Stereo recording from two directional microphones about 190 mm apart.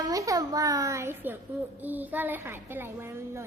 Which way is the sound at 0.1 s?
20° right (ahead or behind).